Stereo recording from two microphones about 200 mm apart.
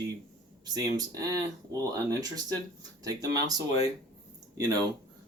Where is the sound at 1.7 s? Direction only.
20° right (ahead or behind).